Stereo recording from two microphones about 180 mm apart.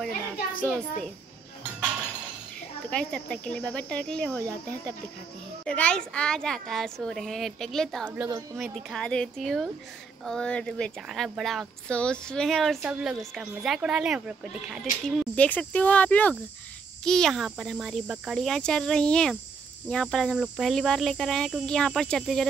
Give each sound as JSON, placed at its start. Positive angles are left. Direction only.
{"t": 0.6, "sound": "speech", "side_deg": 5}
{"t": 2.9, "sound": "speech", "side_deg": 5}
{"t": 4.4, "sound": "speech", "side_deg": -20}
{"t": 5.7, "sound": "speech", "side_deg": 5}
{"t": 15.0, "sound": "speech", "side_deg": 5}